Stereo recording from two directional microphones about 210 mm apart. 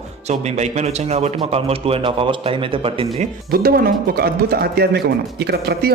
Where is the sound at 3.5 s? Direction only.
45° right (ahead or behind).